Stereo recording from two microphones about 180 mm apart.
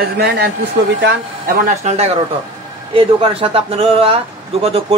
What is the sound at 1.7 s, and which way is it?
Speech, 40° right (ahead or behind).